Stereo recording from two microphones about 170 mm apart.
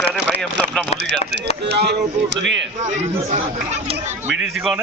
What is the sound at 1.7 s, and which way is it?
Speech, 75° right (ahead or behind).